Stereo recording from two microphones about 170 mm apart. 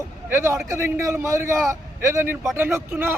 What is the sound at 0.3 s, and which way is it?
Speech, 15° right (ahead or behind).